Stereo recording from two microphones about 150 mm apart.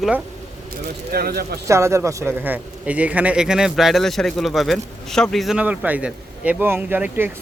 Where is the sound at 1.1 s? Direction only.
90° right.